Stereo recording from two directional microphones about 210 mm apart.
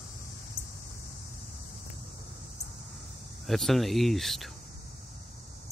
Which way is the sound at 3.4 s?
Centre (ahead or behind).